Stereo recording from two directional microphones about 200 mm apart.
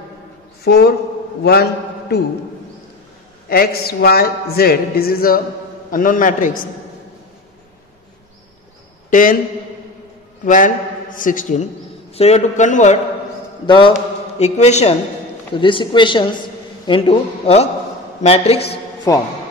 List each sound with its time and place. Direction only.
0.7 s a man's voice: 55° left (ahead or behind)
3.4 s a man's voice: 50° left (ahead or behind)
9.1 s a man's voice: 45° left (ahead or behind)
10.4 s a man's voice: 40° left (ahead or behind)
13.7 s a man's voice: 25° left (ahead or behind)